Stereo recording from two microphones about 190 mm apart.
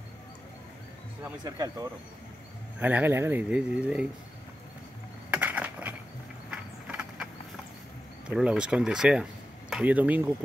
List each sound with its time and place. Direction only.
1.4 s speech: 20° right (ahead or behind)
2.8 s speech: 10° right (ahead or behind)
5.3 s a sound: 10° right (ahead or behind)
8.3 s speech: 5° right (ahead or behind)